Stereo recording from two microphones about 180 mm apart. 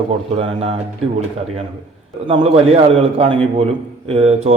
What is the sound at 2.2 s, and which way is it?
A man's voice, 30° right (ahead or behind).